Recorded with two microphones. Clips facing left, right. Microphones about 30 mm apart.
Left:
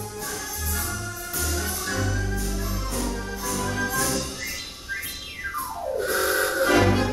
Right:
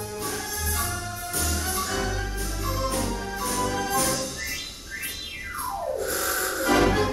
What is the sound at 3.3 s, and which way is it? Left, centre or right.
Music, right.